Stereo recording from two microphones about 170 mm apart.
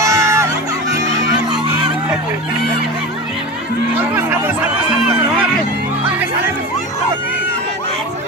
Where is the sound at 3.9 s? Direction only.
10° right (ahead or behind).